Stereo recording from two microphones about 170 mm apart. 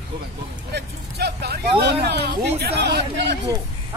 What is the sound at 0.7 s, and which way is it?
Speech, 70° right (ahead or behind).